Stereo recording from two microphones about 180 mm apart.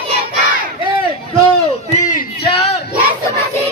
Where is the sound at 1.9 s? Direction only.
45° left (ahead or behind).